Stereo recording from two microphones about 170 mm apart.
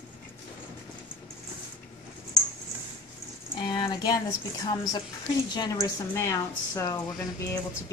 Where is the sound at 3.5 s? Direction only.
25° left (ahead or behind).